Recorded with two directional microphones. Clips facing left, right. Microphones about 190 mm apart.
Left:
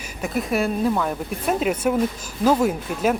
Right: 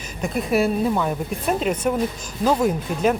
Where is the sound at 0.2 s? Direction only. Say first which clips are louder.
Right 2 dB; centre (ahead or behind).